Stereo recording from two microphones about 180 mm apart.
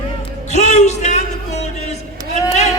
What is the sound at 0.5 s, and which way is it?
Speech, 40° left (ahead or behind).